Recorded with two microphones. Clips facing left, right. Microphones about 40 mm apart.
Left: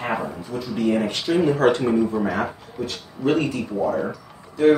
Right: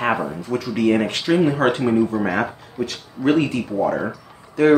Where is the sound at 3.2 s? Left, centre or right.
Right.